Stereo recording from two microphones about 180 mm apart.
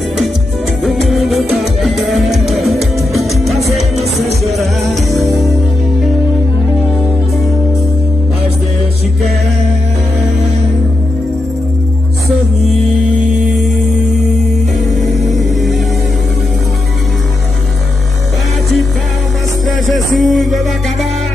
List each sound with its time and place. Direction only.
0.8 s music: centre (ahead or behind)
4.5 s music: centre (ahead or behind)
15.0 s music: centre (ahead or behind)
19.9 s music: centre (ahead or behind)